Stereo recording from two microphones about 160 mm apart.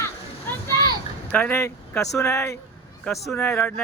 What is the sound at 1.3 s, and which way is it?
Speech, 10° left (ahead or behind).